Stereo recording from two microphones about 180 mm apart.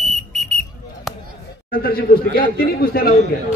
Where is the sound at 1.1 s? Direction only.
Centre (ahead or behind).